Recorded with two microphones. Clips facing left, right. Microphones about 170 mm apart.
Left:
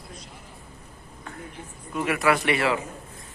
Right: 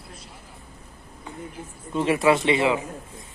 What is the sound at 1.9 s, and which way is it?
Speech, 25° right (ahead or behind).